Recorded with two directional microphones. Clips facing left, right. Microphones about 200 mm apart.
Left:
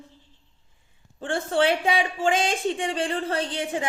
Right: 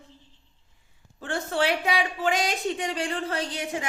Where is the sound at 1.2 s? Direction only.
30° left (ahead or behind).